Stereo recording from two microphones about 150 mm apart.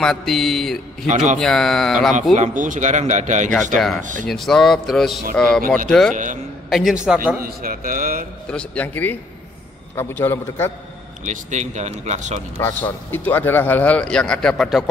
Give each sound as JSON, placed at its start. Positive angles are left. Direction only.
{"t": 0.0, "sound": "a man's voice", "side_deg": 0}
{"t": 1.0, "sound": "speech", "side_deg": -55}
{"t": 1.4, "sound": "a man's voice", "side_deg": 5}
{"t": 2.3, "sound": "speech", "side_deg": -55}
{"t": 4.3, "sound": "a man's voice", "side_deg": 0}
{"t": 7.4, "sound": "speech", "side_deg": -75}
{"t": 8.5, "sound": "a man's voice", "side_deg": 10}
{"t": 11.2, "sound": "speech", "side_deg": -50}
{"t": 12.5, "sound": "a man's voice", "side_deg": 15}